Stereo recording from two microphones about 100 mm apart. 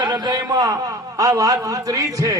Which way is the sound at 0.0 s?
45° right (ahead or behind).